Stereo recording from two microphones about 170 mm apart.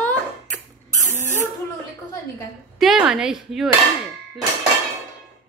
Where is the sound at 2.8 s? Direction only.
Centre (ahead or behind).